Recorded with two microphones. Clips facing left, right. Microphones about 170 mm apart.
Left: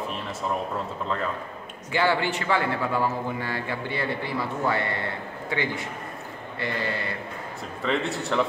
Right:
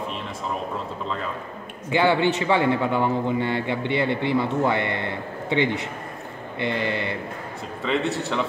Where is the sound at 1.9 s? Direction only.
20° right (ahead or behind).